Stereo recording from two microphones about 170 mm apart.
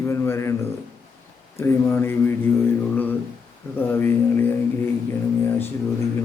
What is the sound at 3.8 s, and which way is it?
A man's voice, 10° left (ahead or behind).